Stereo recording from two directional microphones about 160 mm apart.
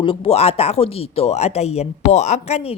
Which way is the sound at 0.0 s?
35° left (ahead or behind).